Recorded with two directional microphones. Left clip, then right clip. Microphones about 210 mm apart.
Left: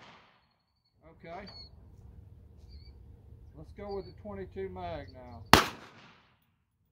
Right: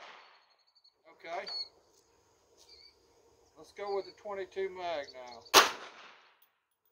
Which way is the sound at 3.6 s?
30° right (ahead or behind).